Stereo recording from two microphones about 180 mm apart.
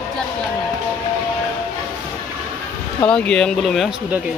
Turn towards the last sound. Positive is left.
turn(degrees=0)  # may be behind; listen again after turning